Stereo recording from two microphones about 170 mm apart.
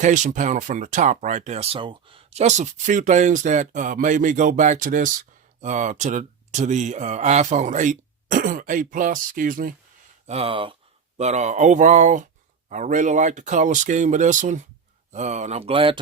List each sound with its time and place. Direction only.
0.0 s speech: 45° right (ahead or behind)
10.2 s speech: 35° right (ahead or behind)
11.2 s speech: 40° right (ahead or behind)